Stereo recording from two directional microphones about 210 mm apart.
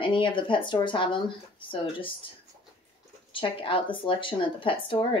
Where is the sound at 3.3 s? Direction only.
25° left (ahead or behind).